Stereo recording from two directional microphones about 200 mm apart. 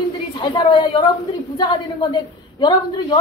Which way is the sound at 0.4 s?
25° left (ahead or behind).